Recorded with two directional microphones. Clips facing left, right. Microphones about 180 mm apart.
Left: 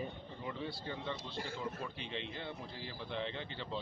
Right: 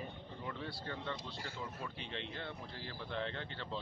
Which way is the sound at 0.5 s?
5° left (ahead or behind).